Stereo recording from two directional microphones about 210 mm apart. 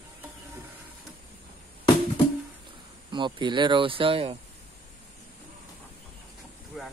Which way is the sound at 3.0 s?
20° right (ahead or behind).